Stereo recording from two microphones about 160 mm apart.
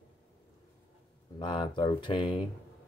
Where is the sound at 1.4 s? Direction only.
30° left (ahead or behind).